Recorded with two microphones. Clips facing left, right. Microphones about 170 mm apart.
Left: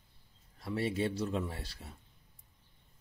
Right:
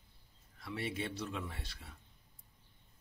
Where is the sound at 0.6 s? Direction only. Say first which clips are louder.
Left 7 dB; 40° left (ahead or behind).